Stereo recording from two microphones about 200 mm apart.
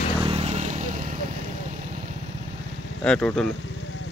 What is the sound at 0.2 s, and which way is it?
Vehicle, 30° right (ahead or behind).